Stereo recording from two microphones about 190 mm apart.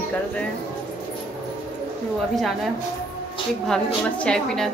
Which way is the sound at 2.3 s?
Centre (ahead or behind).